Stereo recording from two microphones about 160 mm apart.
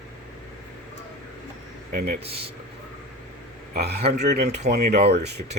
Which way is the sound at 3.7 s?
90° right.